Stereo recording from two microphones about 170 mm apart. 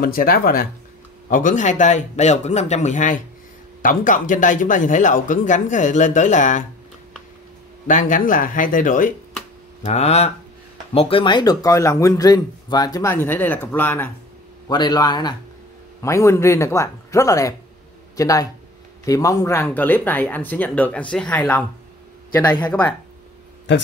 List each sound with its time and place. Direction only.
0.0 s speech: 60° left (ahead or behind)
7.8 s speech: 50° left (ahead or behind)
9.8 s speech: 40° left (ahead or behind); by 14.1 s 10° left (ahead or behind)
14.7 s speech: 25° left (ahead or behind)